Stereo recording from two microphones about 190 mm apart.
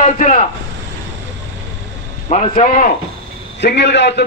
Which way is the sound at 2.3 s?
45° left (ahead or behind).